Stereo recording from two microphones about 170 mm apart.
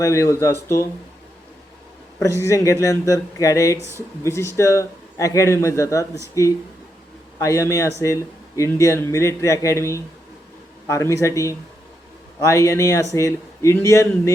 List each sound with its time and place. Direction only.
0.0 s speech: 15° left (ahead or behind)
2.1 s speech: 20° left (ahead or behind)